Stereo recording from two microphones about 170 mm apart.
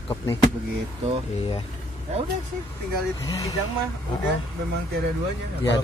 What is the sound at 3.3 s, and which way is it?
Speech, 20° left (ahead or behind).